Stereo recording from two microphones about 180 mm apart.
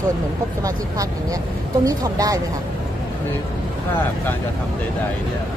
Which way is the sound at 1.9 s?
20° right (ahead or behind).